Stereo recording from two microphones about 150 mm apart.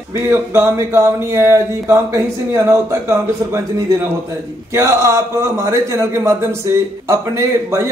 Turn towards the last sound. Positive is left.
turn(degrees=-20)  # may be behind; listen again after turning